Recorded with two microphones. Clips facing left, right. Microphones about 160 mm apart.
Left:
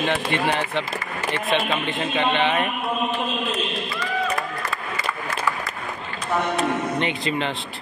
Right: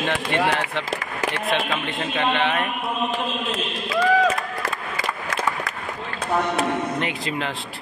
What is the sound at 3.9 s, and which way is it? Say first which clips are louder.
Run: right 11 dB; 90° right.